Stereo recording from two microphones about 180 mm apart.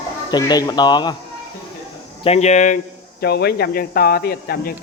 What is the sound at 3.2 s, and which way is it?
Speech, 65° left (ahead or behind).